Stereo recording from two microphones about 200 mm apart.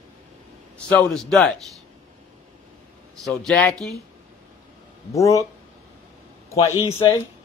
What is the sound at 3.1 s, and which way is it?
Speech, 5° left (ahead or behind).